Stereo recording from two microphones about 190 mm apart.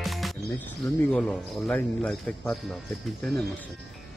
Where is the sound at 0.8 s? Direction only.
5° left (ahead or behind).